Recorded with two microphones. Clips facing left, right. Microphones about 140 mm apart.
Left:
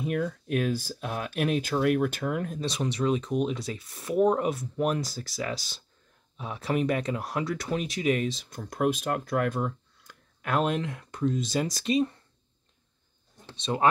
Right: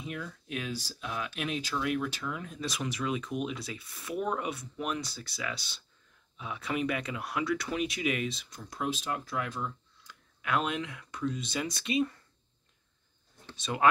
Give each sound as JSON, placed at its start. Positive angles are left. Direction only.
{"t": 0.0, "sound": "speech", "side_deg": 50}
{"t": 2.6, "sound": "speech", "side_deg": 30}
{"t": 8.5, "sound": "speech", "side_deg": 55}
{"t": 13.6, "sound": "speech", "side_deg": 30}